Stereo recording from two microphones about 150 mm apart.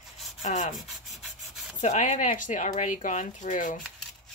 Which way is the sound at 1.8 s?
50° left (ahead or behind).